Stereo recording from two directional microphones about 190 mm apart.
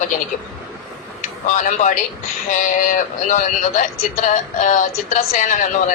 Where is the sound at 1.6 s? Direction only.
40° left (ahead or behind).